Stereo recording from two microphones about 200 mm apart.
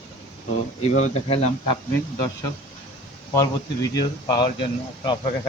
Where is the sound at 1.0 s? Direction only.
30° left (ahead or behind).